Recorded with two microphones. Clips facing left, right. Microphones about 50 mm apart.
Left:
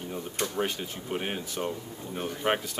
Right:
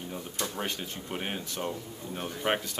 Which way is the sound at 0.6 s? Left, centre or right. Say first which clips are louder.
Left 4 dB; centre.